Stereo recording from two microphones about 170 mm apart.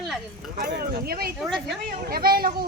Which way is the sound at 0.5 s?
65° right (ahead or behind).